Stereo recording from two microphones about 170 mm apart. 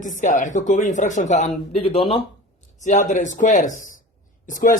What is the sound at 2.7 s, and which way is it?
Speech, 45° left (ahead or behind).